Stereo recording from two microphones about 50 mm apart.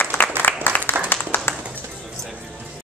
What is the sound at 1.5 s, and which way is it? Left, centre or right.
Bird, left.